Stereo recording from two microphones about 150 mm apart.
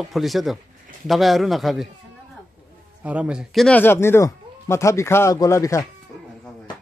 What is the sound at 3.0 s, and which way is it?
Speech, 10° right (ahead or behind).